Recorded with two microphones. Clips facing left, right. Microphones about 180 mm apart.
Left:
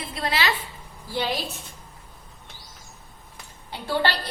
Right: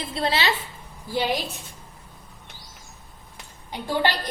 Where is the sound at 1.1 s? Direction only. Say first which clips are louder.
Right 2 dB; 15° right (ahead or behind).